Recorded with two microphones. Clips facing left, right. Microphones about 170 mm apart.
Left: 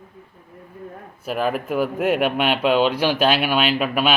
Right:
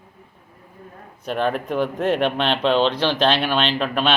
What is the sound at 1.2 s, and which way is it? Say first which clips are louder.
Speech: even; 5° left (ahead or behind).